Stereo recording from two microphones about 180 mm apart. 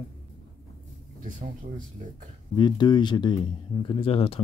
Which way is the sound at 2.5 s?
25° left (ahead or behind).